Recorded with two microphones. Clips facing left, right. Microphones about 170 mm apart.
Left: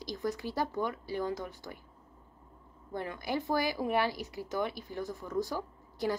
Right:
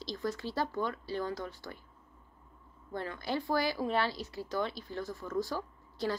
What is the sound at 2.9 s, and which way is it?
Speech, 15° left (ahead or behind).